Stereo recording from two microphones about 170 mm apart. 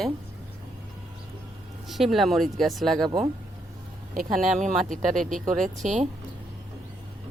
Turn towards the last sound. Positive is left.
turn(degrees=-45)  # may be behind; listen again after turning